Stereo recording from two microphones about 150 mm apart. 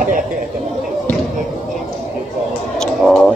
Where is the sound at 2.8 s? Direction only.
5° left (ahead or behind).